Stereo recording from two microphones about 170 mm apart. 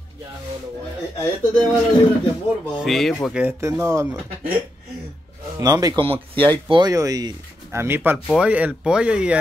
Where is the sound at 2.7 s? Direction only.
Centre (ahead or behind).